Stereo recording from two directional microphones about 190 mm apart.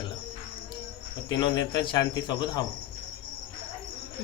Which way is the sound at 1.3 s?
25° left (ahead or behind).